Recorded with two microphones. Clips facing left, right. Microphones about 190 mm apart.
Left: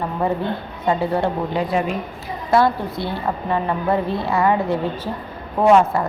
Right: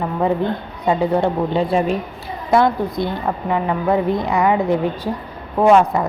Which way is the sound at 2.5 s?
20° right (ahead or behind).